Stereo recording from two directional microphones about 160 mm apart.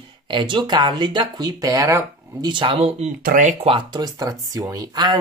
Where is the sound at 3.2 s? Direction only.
55° right (ahead or behind).